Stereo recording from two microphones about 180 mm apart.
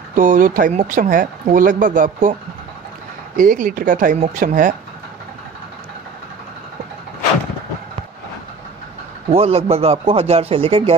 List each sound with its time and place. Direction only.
0.1 s speech: 45° right (ahead or behind)
3.3 s speech: 50° right (ahead or behind)
9.3 s speech: 35° right (ahead or behind)